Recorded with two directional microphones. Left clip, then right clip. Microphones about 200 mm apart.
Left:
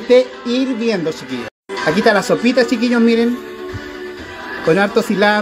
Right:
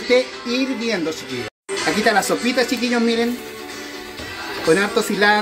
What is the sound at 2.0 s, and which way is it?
A woman's voice, 20° left (ahead or behind).